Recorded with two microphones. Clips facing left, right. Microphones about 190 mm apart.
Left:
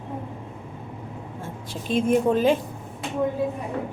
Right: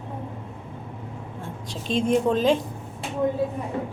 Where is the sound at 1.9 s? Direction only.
55° left (ahead or behind).